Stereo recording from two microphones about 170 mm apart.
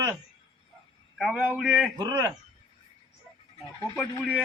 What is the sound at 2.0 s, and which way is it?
Speech, 20° right (ahead or behind).